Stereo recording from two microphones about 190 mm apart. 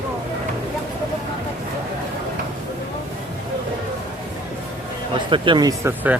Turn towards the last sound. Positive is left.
turn(degrees=-10)  # may be behind; listen again after turning